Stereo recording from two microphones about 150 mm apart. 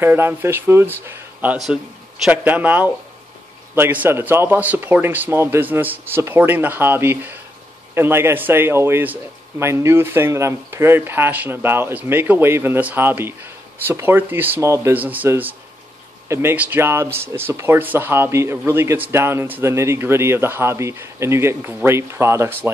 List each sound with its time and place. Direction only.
0.0 s a man's voice: 15° right (ahead or behind)